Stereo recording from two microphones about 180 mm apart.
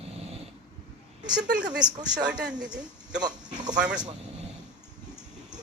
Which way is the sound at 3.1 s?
20° right (ahead or behind).